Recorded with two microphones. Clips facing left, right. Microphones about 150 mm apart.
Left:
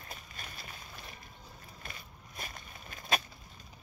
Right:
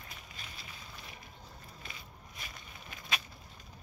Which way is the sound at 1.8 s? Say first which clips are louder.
Left 1 dB; 50° left (ahead or behind).